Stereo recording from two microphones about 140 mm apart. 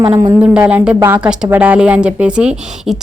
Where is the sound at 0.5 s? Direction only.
10° right (ahead or behind).